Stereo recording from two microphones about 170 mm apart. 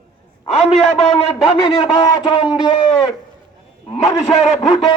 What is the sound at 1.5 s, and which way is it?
Speech, 30° left (ahead or behind).